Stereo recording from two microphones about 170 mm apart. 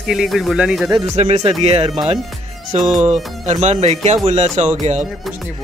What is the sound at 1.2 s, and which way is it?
Speech, 40° right (ahead or behind).